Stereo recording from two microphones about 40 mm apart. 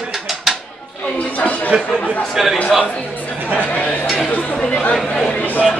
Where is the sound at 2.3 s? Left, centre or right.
Centre.